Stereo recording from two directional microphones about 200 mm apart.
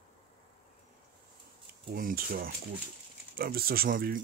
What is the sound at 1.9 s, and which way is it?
Speech, 45° right (ahead or behind).